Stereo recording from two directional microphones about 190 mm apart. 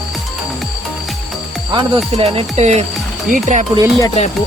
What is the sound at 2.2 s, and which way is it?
Speech, 30° right (ahead or behind).